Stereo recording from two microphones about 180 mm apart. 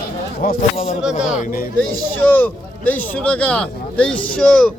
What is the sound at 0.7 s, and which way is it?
Speech, 35° left (ahead or behind).